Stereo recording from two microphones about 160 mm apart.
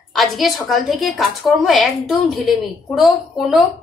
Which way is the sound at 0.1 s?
Centre (ahead or behind).